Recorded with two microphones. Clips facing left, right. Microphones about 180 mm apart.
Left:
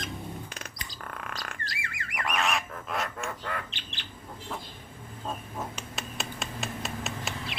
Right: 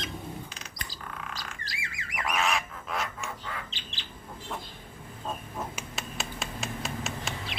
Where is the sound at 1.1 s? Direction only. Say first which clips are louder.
Left 2 dB; 55° left (ahead or behind).